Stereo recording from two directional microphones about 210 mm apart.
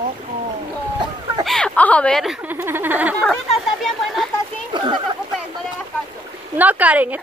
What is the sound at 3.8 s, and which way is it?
Speech, centre (ahead or behind).